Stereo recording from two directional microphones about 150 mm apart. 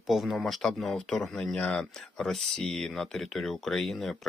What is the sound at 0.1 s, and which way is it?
Speech, centre (ahead or behind).